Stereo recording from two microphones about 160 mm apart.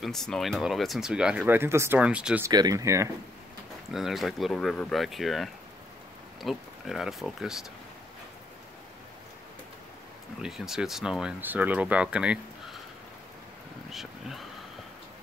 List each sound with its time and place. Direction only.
0.0 s speech: centre (ahead or behind)
2.5 s speech: 25° right (ahead or behind)
3.9 s speech: centre (ahead or behind)
10.4 s speech: 5° right (ahead or behind)